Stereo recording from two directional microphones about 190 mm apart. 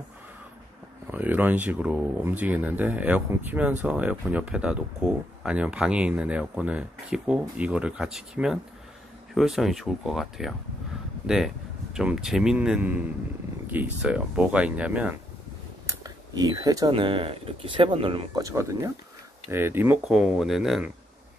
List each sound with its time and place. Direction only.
1.1 s speech: 10° right (ahead or behind)
15.9 s speech: 20° right (ahead or behind); by 20.9 s centre (ahead or behind)